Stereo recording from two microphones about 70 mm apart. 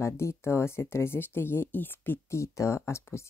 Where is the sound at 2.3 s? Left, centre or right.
Left.